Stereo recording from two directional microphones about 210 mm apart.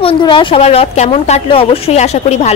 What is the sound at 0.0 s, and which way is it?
A woman's voice, 25° left (ahead or behind).